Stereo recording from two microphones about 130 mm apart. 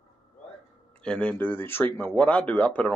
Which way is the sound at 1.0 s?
10° left (ahead or behind).